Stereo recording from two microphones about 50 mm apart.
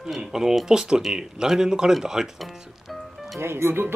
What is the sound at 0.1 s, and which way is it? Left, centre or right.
Speech, centre.